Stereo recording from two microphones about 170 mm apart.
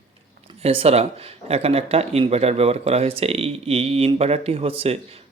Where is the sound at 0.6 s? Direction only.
35° right (ahead or behind).